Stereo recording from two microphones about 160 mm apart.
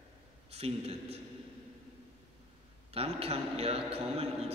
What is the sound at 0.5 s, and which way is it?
Speech, 40° right (ahead or behind).